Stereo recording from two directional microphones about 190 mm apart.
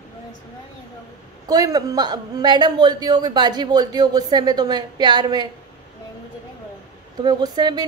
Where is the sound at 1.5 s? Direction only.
20° right (ahead or behind).